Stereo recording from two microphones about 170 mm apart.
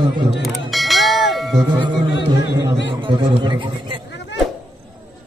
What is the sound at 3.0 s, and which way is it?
A man's voice, 30° right (ahead or behind).